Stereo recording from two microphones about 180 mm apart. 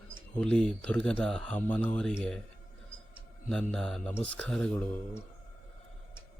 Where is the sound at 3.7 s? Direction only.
5° left (ahead or behind).